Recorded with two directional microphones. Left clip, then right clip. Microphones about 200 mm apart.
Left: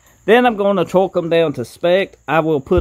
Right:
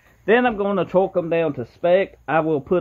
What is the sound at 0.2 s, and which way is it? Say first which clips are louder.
Speech: left 5 dB; 55° left (ahead or behind).